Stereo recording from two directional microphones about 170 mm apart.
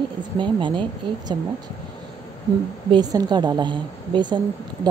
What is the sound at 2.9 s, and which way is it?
Speech, 25° right (ahead or behind).